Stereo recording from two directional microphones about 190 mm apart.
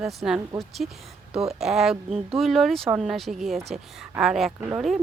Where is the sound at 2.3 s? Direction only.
Centre (ahead or behind).